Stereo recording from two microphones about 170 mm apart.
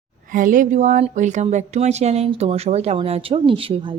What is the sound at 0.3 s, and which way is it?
Speech, 55° right (ahead or behind).